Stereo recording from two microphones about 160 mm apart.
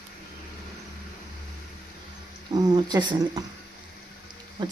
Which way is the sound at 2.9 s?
25° right (ahead or behind).